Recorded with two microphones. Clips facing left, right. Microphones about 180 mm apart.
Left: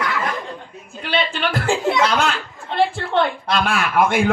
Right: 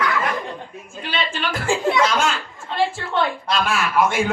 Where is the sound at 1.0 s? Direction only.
60° left (ahead or behind).